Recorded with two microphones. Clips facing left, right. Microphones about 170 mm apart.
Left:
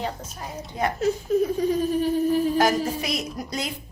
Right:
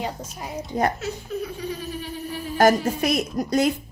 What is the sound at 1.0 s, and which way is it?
Laughter, 45° left (ahead or behind).